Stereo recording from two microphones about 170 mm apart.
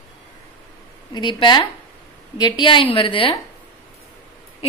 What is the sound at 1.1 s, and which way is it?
A woman's voice, 25° left (ahead or behind).